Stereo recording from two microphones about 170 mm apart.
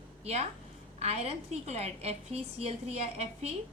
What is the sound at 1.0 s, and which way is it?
A woman's voice, 40° right (ahead or behind).